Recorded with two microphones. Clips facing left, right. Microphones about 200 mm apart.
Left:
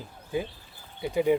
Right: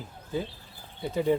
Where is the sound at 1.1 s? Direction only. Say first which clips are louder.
Left 2 dB; 10° left (ahead or behind).